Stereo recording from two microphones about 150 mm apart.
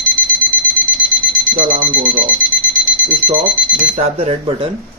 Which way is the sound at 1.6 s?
60° right (ahead or behind).